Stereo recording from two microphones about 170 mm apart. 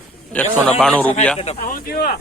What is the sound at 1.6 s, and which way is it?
Speech, 55° left (ahead or behind).